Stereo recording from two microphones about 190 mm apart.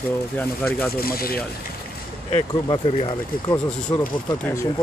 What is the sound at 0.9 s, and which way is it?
Speech, 50° left (ahead or behind).